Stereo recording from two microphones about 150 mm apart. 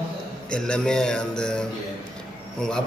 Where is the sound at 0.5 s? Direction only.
5° left (ahead or behind).